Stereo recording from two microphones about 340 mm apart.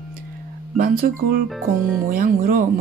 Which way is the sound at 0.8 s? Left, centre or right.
Right.